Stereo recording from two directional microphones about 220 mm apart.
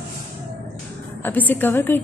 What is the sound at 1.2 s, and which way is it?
Speech, 10° left (ahead or behind).